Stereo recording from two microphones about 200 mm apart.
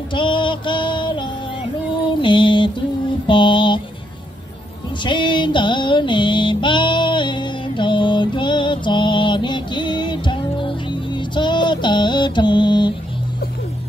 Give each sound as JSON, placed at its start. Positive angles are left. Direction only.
{"t": 0.1, "sound": "music", "side_deg": 25}
{"t": 2.2, "sound": "mantra", "side_deg": 25}
{"t": 5.0, "sound": "music", "side_deg": 25}